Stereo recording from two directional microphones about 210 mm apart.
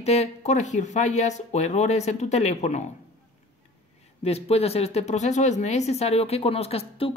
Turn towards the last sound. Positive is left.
turn(degrees=25)  # may be behind; listen again after turning